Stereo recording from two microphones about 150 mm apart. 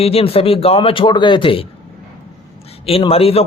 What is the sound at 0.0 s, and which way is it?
A man's voice, 40° left (ahead or behind).